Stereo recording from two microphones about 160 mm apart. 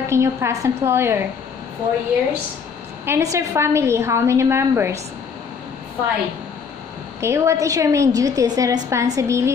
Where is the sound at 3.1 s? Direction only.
20° right (ahead or behind).